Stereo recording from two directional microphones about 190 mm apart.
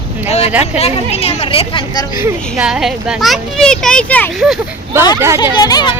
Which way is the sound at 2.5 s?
5° right (ahead or behind).